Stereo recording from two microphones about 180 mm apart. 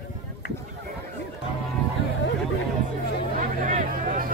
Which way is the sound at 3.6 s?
45° right (ahead or behind).